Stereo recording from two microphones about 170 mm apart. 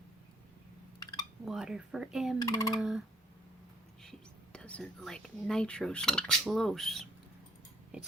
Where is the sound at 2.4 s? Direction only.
20° left (ahead or behind).